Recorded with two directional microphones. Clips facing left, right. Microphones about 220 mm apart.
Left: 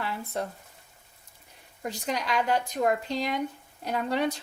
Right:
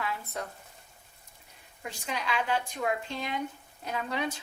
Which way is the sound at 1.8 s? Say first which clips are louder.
Left 5 dB; 40° left (ahead or behind).